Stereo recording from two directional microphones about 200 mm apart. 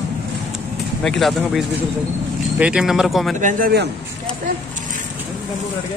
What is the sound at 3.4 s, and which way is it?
Speech, 40° right (ahead or behind).